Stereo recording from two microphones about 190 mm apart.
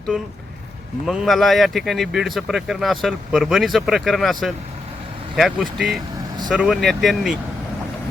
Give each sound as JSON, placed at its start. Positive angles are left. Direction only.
{"t": 0.1, "sound": "speech", "side_deg": -5}